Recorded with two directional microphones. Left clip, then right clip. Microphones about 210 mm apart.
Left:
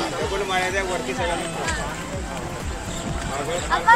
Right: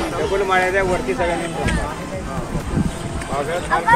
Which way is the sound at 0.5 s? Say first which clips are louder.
Right 7 dB; 30° right (ahead or behind).